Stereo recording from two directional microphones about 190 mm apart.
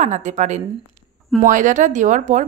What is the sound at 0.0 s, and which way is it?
A woman's voice, 40° right (ahead or behind).